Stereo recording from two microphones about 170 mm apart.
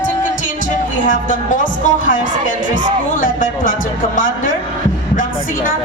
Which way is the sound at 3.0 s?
55° left (ahead or behind).